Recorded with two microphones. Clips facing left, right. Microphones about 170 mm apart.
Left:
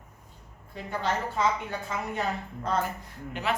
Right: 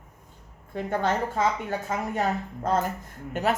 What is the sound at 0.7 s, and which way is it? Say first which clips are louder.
Speech: right 5 dB; 50° right (ahead or behind).